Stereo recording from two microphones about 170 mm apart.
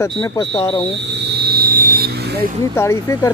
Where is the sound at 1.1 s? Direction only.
75° right (ahead or behind).